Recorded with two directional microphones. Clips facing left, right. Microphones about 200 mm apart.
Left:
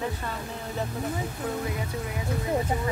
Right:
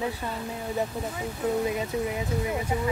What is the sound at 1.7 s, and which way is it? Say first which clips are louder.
Music: right 5 dB; 20° right (ahead or behind).